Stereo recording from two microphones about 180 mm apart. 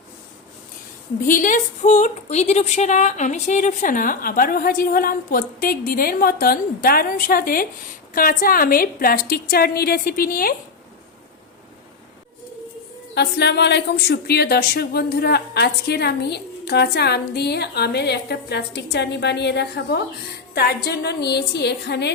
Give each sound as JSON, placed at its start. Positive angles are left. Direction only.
{"t": 1.3, "sound": "a woman's voice", "side_deg": 45}
{"t": 13.1, "sound": "speech", "side_deg": 65}